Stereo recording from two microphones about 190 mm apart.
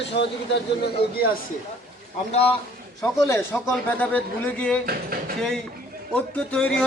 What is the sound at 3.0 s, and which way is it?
A man's voice, 15° left (ahead or behind).